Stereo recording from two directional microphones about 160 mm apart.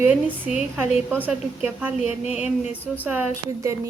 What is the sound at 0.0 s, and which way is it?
A woman's voice, 10° right (ahead or behind).